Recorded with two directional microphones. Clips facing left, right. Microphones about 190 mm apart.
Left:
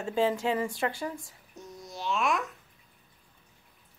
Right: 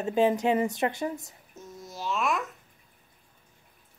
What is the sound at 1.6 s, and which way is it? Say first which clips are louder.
Babbling: right 1 dB; centre (ahead or behind).